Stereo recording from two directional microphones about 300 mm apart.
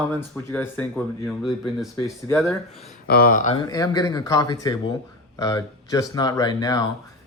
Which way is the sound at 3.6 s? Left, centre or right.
Centre.